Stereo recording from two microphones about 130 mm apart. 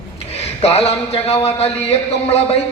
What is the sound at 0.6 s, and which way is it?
A man's voice, 55° left (ahead or behind).